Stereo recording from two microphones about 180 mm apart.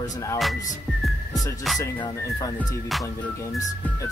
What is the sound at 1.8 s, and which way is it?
Speech, 15° left (ahead or behind).